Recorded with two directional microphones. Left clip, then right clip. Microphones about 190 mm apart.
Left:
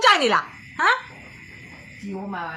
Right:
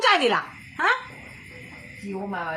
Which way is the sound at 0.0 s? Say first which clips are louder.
Left 3 dB; 20° left (ahead or behind).